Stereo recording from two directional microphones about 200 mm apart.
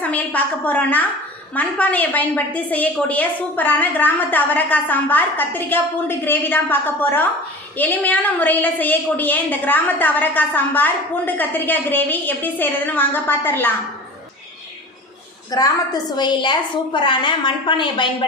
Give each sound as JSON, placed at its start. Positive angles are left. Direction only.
{"t": 0.0, "sound": "a woman's voice", "side_deg": 5}
{"t": 15.4, "sound": "a woman's voice", "side_deg": 20}